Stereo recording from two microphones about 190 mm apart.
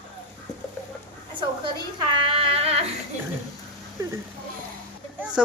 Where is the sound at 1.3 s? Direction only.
25° right (ahead or behind).